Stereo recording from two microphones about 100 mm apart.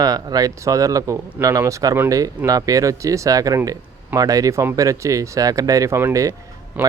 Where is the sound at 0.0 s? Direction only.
40° right (ahead or behind).